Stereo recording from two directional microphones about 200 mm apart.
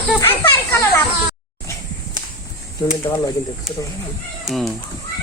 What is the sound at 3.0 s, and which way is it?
Speech, 20° left (ahead or behind).